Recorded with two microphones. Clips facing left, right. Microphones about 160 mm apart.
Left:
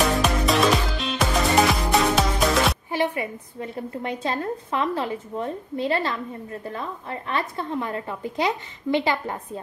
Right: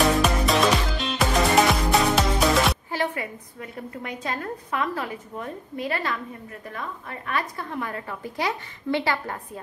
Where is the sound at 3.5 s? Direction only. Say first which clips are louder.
Left 6 dB; 30° left (ahead or behind).